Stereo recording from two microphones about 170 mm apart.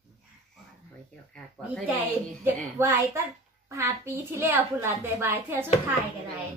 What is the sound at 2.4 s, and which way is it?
A woman's voice, 15° right (ahead or behind).